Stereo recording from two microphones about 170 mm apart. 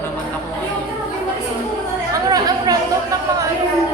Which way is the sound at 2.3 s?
20° right (ahead or behind).